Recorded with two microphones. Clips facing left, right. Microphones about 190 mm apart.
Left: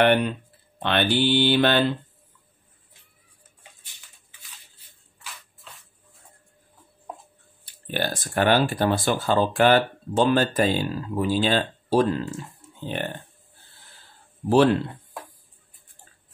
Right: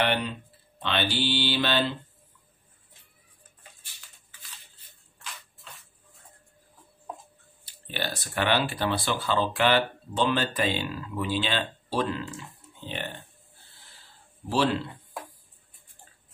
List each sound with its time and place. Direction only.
0.0 s speech: 55° left (ahead or behind)
4.7 s shuffle: 5° left (ahead or behind)
7.6 s speech: 50° left (ahead or behind)
14.5 s speech: 55° left (ahead or behind)